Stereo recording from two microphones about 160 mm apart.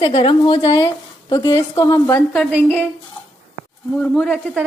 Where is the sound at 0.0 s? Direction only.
30° left (ahead or behind).